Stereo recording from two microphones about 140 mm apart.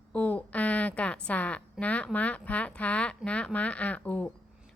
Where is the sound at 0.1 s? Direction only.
10° left (ahead or behind).